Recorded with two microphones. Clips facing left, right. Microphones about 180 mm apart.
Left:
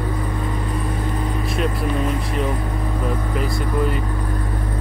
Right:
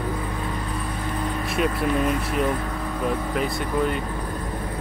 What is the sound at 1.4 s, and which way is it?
Speech, centre (ahead or behind).